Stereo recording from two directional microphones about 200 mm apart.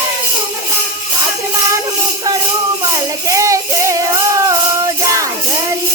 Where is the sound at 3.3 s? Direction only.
15° right (ahead or behind).